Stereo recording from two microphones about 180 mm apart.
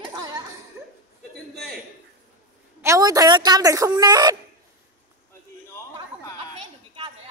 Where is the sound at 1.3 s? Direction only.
Centre (ahead or behind).